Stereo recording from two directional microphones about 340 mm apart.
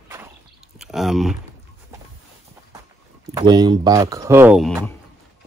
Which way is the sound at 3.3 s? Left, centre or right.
Centre.